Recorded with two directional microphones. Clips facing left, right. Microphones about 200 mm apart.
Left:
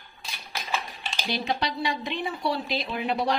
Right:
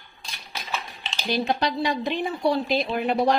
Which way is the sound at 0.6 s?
10° left (ahead or behind).